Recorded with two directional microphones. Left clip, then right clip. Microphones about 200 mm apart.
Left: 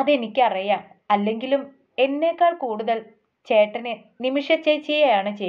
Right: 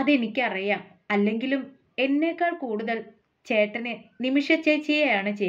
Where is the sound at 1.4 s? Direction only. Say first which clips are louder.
Left 6 dB; 5° right (ahead or behind).